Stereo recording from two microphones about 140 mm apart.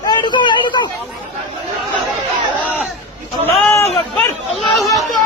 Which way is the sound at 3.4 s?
15° left (ahead or behind).